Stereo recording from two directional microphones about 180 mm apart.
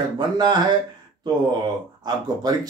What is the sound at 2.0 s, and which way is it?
Speech, 25° right (ahead or behind).